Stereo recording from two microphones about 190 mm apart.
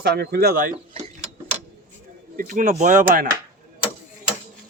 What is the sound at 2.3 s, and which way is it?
Speech, 45° right (ahead or behind).